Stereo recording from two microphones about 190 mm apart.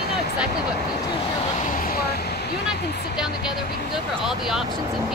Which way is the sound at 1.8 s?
50° left (ahead or behind).